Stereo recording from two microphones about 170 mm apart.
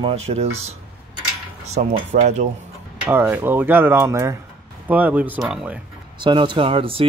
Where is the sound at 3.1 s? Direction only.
15° right (ahead or behind).